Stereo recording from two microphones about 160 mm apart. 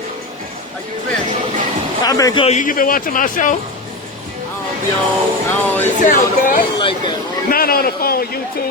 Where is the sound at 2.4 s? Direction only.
50° left (ahead or behind).